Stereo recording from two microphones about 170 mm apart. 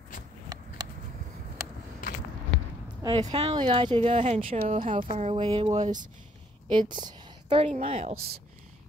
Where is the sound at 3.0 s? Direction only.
25° right (ahead or behind).